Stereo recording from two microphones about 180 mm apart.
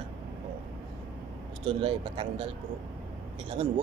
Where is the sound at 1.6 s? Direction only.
30° right (ahead or behind).